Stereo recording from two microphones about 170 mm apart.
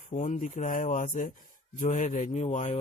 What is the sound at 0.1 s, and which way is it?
A man's voice, 50° left (ahead or behind).